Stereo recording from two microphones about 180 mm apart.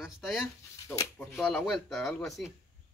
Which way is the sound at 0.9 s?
15° left (ahead or behind).